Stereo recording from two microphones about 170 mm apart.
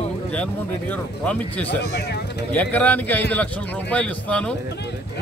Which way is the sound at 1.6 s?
75° left (ahead or behind).